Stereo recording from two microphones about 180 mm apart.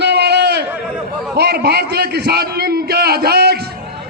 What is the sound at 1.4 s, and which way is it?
A man's voice, 65° right (ahead or behind).